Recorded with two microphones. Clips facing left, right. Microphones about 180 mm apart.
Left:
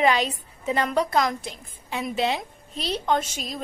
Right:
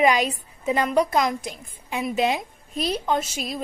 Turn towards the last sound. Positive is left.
turn(degrees=-10)  # may be behind; listen again after turning